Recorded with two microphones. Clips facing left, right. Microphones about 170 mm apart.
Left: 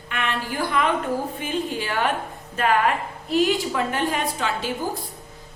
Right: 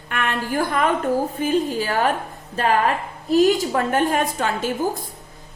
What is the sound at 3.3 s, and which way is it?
A woman's voice, 50° right (ahead or behind).